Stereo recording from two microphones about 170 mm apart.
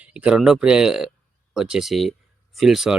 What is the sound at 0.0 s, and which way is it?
Speech, 5° right (ahead or behind).